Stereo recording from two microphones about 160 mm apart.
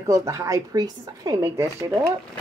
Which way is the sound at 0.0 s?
20° right (ahead or behind).